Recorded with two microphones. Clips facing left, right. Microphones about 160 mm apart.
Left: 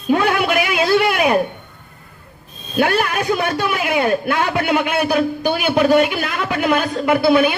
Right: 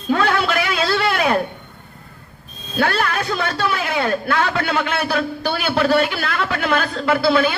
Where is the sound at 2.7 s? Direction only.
15° left (ahead or behind).